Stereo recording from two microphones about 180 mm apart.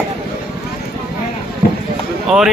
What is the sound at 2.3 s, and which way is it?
Speech, centre (ahead or behind).